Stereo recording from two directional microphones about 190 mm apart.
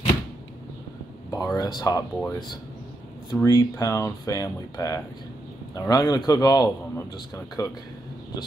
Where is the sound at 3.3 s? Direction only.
15° left (ahead or behind).